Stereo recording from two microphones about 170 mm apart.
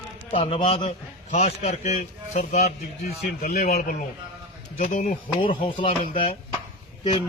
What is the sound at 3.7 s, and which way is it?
Speech, 60° left (ahead or behind).